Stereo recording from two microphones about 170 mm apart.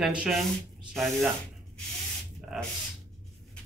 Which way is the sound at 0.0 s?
5° right (ahead or behind).